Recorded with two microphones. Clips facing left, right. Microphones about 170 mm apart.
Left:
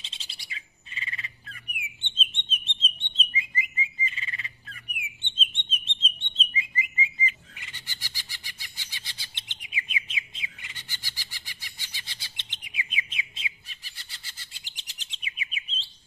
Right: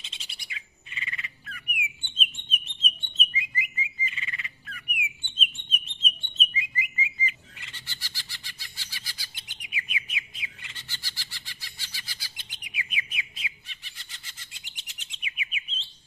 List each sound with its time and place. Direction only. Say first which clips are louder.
0.0 s bird: right 1 dB; 30° left (ahead or behind)
5.2 s chirp: even; 25° left (ahead or behind)
7.5 s bird: left 1 dB; 15° left (ahead or behind)
13.7 s bird: even; 35° left (ahead or behind)